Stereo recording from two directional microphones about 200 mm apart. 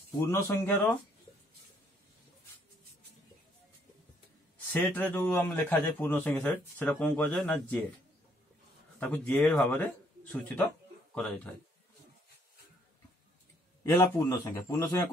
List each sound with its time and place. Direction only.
0.2 s a man's voice: 15° left (ahead or behind)
4.7 s a man's voice: 10° left (ahead or behind)
9.1 s a man's voice: 5° left (ahead or behind)
13.8 s a man's voice: 15° left (ahead or behind)